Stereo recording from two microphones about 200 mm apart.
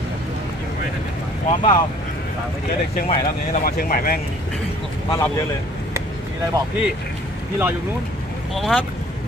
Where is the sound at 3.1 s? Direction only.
45° left (ahead or behind).